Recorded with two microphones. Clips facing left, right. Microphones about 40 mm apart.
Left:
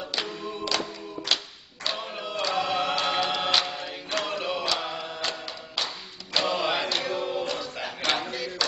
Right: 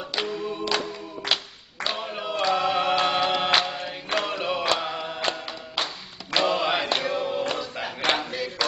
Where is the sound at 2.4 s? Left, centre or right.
Centre.